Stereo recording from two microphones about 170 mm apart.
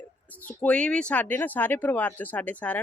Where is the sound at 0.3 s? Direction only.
10° left (ahead or behind).